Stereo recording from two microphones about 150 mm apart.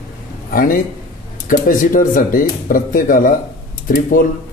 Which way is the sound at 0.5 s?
70° left (ahead or behind).